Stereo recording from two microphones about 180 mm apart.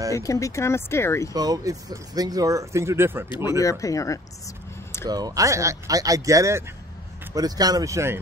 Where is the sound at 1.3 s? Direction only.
20° right (ahead or behind).